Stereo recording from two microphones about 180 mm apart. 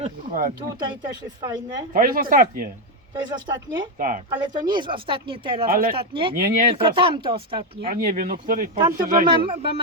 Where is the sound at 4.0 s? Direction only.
50° right (ahead or behind).